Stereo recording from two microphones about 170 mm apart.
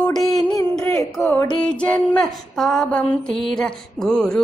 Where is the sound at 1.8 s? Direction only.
5° left (ahead or behind).